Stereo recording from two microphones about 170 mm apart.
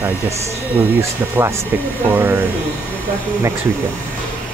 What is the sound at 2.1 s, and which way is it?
Speech, 10° right (ahead or behind).